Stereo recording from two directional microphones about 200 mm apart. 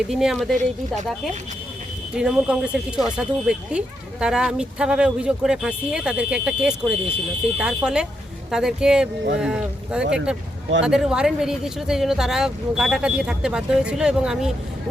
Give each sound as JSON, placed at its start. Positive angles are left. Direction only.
{"t": 0.1, "sound": "speech", "side_deg": 0}
{"t": 2.1, "sound": "speech", "side_deg": -5}
{"t": 10.0, "sound": "speech", "side_deg": -60}
{"t": 10.8, "sound": "speech", "side_deg": -5}